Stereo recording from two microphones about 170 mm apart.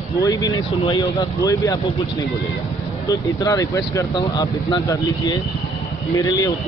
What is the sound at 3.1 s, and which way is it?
Speech, 20° left (ahead or behind).